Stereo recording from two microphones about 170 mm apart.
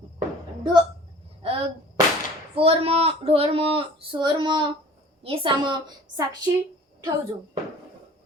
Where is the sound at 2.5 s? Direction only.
35° right (ahead or behind).